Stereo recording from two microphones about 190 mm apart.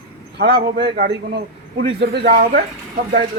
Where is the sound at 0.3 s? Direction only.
55° right (ahead or behind).